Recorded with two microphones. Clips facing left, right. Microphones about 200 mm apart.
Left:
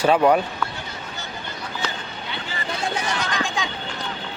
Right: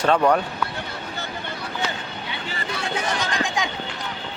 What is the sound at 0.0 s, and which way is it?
Speech, 10° left (ahead or behind).